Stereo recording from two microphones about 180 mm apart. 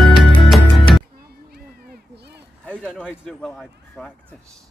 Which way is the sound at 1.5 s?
60° right (ahead or behind).